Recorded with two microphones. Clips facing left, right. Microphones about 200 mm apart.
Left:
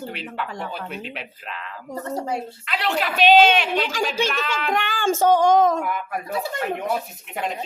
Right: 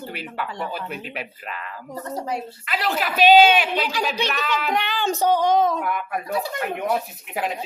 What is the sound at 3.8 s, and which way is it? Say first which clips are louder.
Speech: left 1 dB; 45° left (ahead or behind).